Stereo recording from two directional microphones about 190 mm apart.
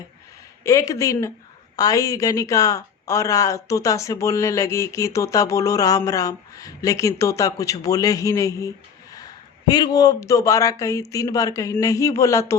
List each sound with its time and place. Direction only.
0.6 s a man's voice: 15° left (ahead or behind)